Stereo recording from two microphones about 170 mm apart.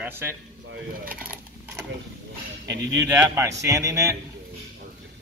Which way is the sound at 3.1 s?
15° right (ahead or behind).